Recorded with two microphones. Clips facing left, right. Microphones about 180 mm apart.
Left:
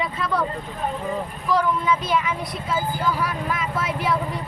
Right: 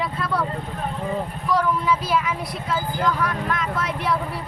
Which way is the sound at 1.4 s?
Centre (ahead or behind).